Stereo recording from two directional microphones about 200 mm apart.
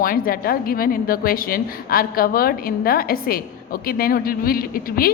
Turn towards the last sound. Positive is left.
turn(degrees=50)  # may be behind; listen again after turning